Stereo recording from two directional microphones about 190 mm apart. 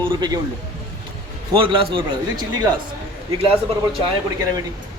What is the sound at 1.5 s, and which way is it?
Speech, 30° right (ahead or behind).